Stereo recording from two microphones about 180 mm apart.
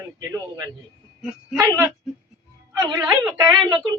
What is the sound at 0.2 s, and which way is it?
Speech, 15° right (ahead or behind).